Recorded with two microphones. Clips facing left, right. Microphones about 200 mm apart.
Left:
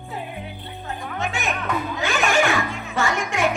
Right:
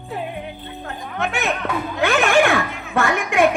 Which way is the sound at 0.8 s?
60° right (ahead or behind).